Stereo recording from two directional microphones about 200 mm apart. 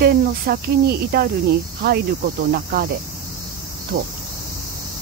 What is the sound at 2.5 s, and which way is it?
Cricket, 50° right (ahead or behind).